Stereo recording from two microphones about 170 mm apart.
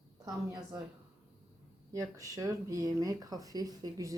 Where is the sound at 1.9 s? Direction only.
20° right (ahead or behind).